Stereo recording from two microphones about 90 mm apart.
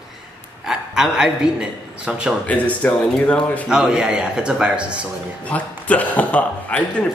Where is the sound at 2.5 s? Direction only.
15° left (ahead or behind).